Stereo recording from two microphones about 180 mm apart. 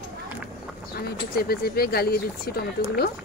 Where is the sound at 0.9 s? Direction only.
60° left (ahead or behind).